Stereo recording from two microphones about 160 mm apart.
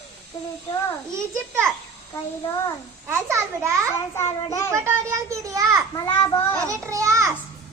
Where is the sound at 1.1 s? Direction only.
15° right (ahead or behind).